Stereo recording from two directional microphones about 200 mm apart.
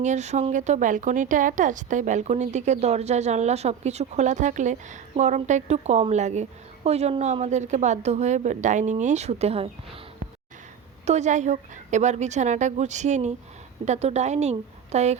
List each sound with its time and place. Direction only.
0.0 s a woman's voice: 35° right (ahead or behind)
11.0 s a woman's voice: 35° right (ahead or behind)